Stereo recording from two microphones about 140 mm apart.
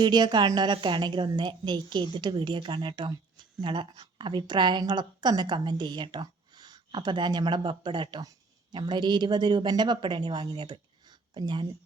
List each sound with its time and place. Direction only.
0.0 s a woman's voice: 30° right (ahead or behind)